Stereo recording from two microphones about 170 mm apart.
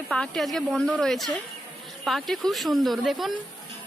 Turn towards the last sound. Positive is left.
turn(degrees=0)  # may be behind; listen again after turning